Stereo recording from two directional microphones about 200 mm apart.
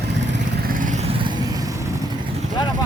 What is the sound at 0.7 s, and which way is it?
Vehicle, 40° right (ahead or behind).